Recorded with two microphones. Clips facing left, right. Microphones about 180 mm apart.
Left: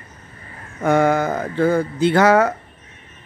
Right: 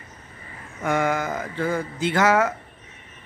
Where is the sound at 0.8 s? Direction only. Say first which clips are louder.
Left 7 dB; 35° left (ahead or behind).